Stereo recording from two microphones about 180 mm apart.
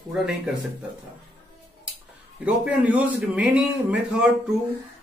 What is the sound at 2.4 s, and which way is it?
A man's voice, 5° right (ahead or behind).